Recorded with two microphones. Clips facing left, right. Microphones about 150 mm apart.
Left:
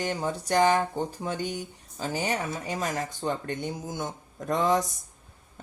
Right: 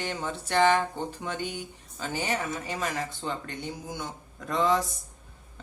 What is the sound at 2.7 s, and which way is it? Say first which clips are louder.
Speech: left 1 dB; 40° left (ahead or behind).